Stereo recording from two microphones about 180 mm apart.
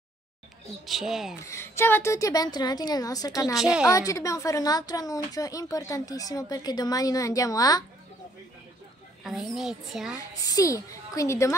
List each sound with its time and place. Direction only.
0.8 s a child's voice: centre (ahead or behind)
1.4 s speech: 15° left (ahead or behind)
3.5 s a child's voice: 5° right (ahead or behind)
3.8 s speech: 20° left (ahead or behind)
9.2 s a child's voice: centre (ahead or behind)
10.4 s a woman's voice: 20° left (ahead or behind)